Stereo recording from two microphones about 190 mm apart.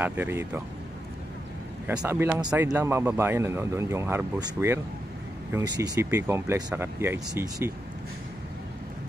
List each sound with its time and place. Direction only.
0.0 s speech: 10° right (ahead or behind)
1.9 s speech: 15° right (ahead or behind)